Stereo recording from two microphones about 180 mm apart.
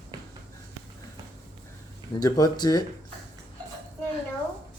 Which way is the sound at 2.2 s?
20° left (ahead or behind).